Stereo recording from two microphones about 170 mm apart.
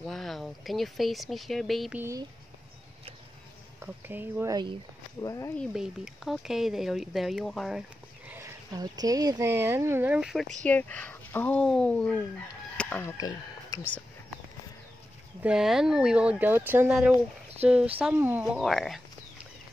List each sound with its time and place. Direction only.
0.0 s speech: centre (ahead or behind)
2.0 s speech: 15° right (ahead or behind)
3.8 s speech: 10° right (ahead or behind)
5.2 s speech: 20° left (ahead or behind)
5.6 s speech: 5° right (ahead or behind)
8.7 s speech: 25° right (ahead or behind); by 10.5 s centre (ahead or behind)
10.6 s speech: 10° left (ahead or behind)
12.7 s chicken: 10° left (ahead or behind)
15.4 s speech: 5° right (ahead or behind)